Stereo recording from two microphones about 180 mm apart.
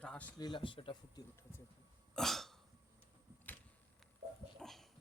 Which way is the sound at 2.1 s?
Centre (ahead or behind).